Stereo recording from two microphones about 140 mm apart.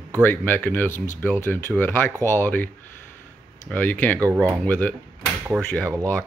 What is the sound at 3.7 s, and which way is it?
Speech, 10° left (ahead or behind).